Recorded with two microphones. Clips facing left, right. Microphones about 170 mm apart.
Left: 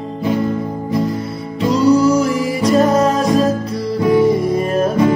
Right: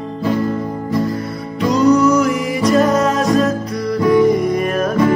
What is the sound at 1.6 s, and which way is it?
Music, 30° left (ahead or behind).